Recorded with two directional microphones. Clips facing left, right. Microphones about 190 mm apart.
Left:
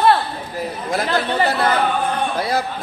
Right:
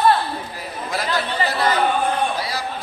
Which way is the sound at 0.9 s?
55° left (ahead or behind).